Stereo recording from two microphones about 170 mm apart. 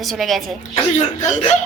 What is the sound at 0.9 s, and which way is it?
Speech, 45° left (ahead or behind).